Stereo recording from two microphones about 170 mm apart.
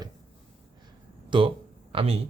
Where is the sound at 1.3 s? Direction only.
30° right (ahead or behind).